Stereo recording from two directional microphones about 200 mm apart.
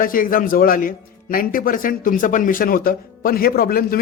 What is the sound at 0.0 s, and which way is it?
Speech, 45° left (ahead or behind).